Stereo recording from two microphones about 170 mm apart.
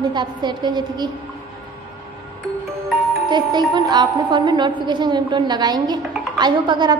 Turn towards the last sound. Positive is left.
turn(degrees=-25)  # may be behind; listen again after turning